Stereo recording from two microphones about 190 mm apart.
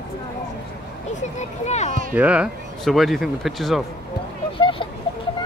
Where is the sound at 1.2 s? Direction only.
35° left (ahead or behind).